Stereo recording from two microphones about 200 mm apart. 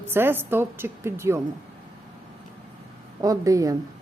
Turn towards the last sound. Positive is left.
turn(degrees=-15)  # may be behind; listen again after turning